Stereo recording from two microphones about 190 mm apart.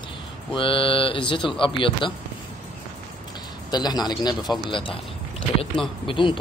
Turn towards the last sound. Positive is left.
turn(degrees=25)  # may be behind; listen again after turning